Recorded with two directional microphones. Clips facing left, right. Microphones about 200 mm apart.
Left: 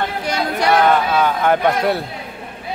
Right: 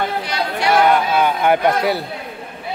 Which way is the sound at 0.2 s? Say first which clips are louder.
Left 2 dB; 45° left (ahead or behind).